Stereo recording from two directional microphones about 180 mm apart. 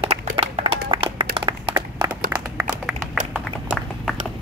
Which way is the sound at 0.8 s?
25° right (ahead or behind).